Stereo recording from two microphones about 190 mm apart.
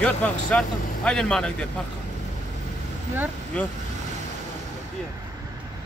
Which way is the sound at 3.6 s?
10° left (ahead or behind).